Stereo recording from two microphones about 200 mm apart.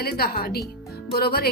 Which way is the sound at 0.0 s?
50° left (ahead or behind).